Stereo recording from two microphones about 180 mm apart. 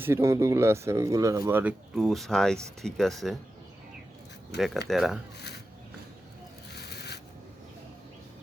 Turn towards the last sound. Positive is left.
turn(degrees=65)  # may be behind; listen again after turning